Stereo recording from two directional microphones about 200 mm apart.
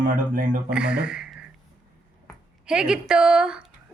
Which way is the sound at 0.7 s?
5° right (ahead or behind).